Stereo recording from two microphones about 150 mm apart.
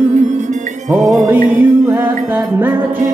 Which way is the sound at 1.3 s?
15° right (ahead or behind).